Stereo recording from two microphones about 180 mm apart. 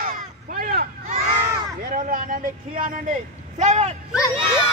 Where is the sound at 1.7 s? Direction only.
50° right (ahead or behind).